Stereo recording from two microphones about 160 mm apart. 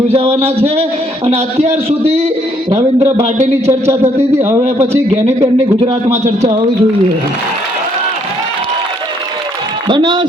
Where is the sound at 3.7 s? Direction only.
15° right (ahead or behind).